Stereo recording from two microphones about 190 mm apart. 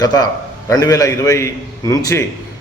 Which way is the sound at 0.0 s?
20° left (ahead or behind).